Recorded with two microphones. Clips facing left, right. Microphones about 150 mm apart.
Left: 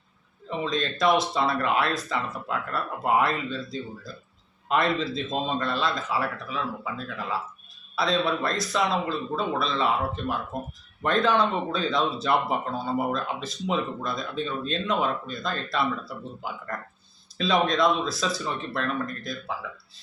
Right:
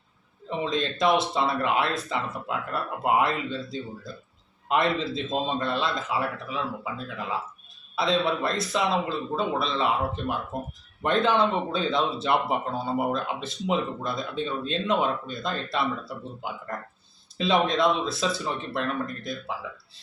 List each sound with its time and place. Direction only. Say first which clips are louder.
0.6 s speech: even; 25° right (ahead or behind)
7.9 s speech: even; 25° right (ahead or behind)